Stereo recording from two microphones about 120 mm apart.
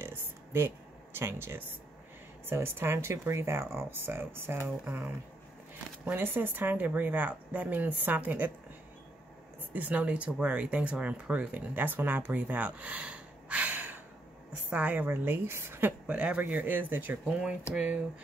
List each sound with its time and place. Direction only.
0.0 s a sound: 20° right (ahead or behind)
1.1 s a woman's voice: 20° right (ahead or behind)
9.7 s a woman's voice: 15° right (ahead or behind)